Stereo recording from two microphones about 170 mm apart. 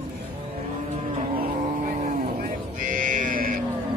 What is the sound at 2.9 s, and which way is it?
Livestock, 55° right (ahead or behind).